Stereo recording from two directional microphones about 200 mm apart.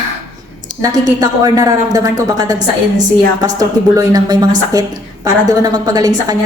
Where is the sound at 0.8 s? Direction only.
20° right (ahead or behind).